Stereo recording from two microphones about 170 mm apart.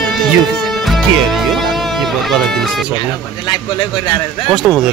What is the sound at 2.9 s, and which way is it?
Speech, 30° left (ahead or behind).